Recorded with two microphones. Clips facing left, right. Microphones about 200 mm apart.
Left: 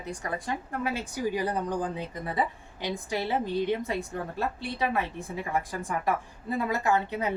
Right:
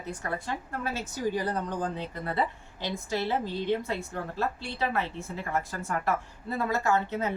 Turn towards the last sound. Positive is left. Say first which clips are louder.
# left 1 dB
turn(degrees=15)  # may be behind; listen again after turning